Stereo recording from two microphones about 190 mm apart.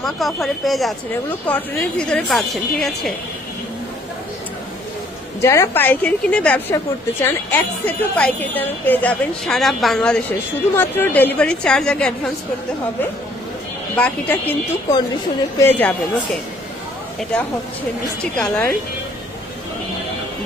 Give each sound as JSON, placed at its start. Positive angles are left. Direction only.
{"t": 0.0, "sound": "speech", "side_deg": 0}
{"t": 5.4, "sound": "a woman's voice", "side_deg": 15}
{"t": 13.9, "sound": "a woman's voice", "side_deg": 10}
{"t": 18.3, "sound": "speech", "side_deg": 5}